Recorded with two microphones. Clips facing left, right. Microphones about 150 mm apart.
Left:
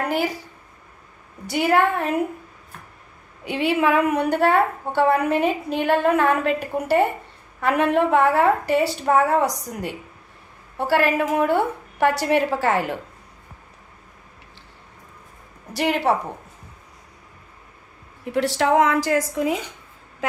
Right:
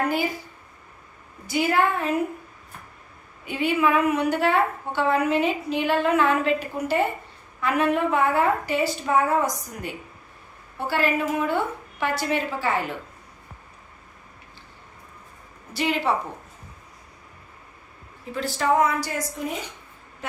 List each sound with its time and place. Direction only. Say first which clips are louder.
1.5 s a woman's voice: left 3 dB; 60° left (ahead or behind)
3.4 s a woman's voice: left 2 dB; 80° left
15.7 s a woman's voice: left 4 dB; 60° left (ahead or behind)
18.3 s a woman's voice: left 4 dB; 75° left (ahead or behind)